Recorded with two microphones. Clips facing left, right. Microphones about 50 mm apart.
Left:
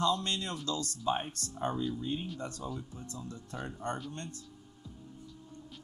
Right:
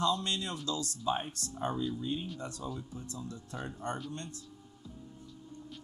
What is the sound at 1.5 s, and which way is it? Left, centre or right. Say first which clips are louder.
Speech: left 1 dB; centre.